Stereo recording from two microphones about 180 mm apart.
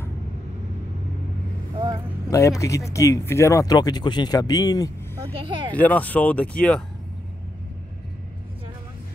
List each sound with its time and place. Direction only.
1.8 s vehicle: 25° right (ahead or behind)
2.3 s speech: 15° left (ahead or behind)
5.7 s speech: 10° left (ahead or behind)